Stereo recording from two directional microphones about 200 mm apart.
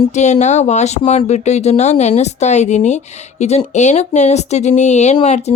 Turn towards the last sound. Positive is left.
turn(degrees=30)  # may be behind; listen again after turning